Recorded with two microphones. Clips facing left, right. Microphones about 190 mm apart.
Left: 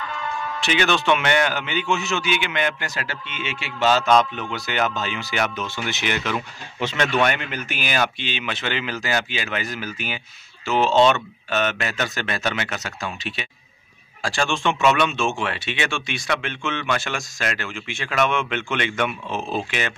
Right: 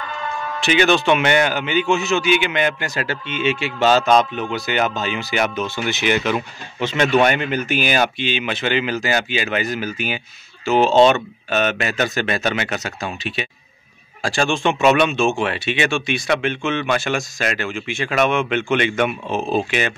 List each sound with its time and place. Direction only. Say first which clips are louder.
0.6 s speech: right 6 dB; 10° right (ahead or behind)
2.9 s speech: right 7 dB; 25° right (ahead or behind)
4.1 s speech: right 2 dB; 15° right (ahead or behind)
7.2 s speech: right 6 dB; 20° right (ahead or behind)